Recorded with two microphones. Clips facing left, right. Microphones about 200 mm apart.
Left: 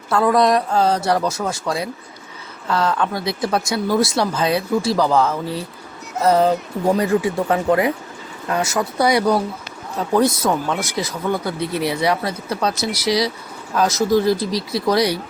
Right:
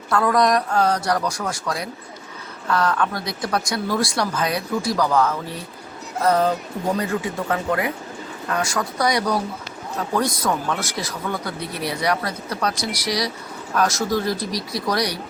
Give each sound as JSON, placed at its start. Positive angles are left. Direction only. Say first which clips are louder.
{"t": 0.1, "sound": "speech", "louder": "left 3 dB", "side_deg": 25}